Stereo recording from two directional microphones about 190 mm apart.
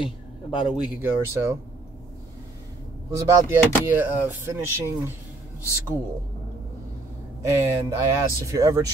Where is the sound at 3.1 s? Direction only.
10° right (ahead or behind).